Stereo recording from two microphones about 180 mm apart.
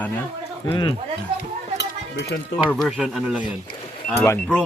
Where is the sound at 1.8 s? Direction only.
70° left (ahead or behind).